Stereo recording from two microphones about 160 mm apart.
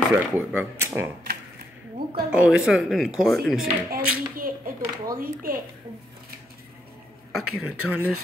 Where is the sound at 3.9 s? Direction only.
65° right (ahead or behind).